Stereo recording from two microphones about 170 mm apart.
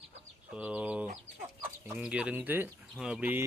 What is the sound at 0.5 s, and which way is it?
Speech, 10° right (ahead or behind).